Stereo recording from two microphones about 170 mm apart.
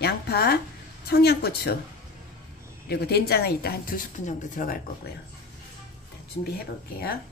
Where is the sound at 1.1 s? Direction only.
70° left (ahead or behind).